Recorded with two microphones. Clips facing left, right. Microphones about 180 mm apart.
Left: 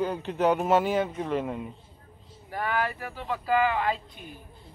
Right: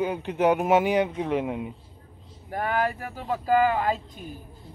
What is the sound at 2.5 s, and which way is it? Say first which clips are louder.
Speech: right 3 dB; 45° right (ahead or behind).